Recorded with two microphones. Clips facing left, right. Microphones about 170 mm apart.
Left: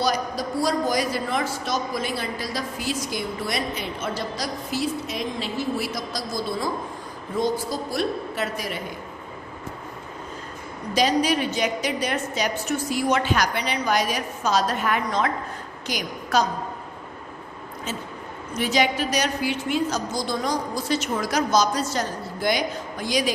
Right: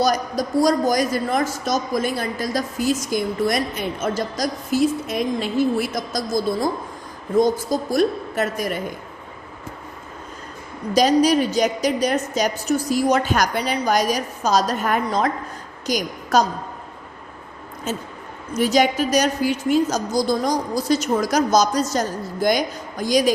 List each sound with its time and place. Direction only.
0.0 s a woman's voice: 45° right (ahead or behind)
10.9 s a woman's voice: 40° right (ahead or behind)
17.9 s a woman's voice: 45° right (ahead or behind)